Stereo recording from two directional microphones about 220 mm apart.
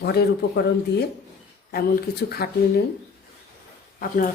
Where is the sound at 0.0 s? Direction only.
45° left (ahead or behind).